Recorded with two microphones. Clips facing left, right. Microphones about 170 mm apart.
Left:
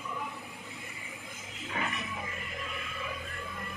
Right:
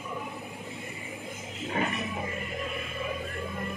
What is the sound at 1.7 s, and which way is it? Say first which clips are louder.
Music: right 6 dB; 35° right (ahead or behind).